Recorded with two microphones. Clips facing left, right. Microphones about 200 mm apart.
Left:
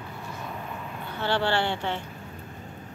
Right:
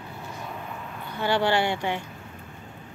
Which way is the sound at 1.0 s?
15° right (ahead or behind).